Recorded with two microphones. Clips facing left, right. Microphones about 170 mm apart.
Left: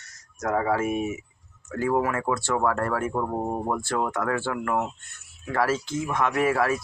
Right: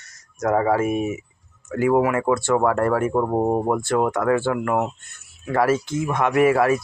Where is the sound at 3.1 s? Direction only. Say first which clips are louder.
Right 7 dB; 35° right (ahead or behind).